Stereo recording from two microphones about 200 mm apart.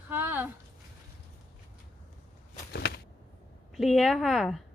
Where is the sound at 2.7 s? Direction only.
55° left (ahead or behind).